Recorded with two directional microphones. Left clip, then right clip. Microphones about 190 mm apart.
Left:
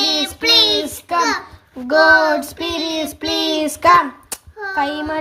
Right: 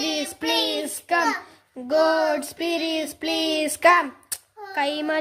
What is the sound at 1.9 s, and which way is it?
Child singing, centre (ahead or behind).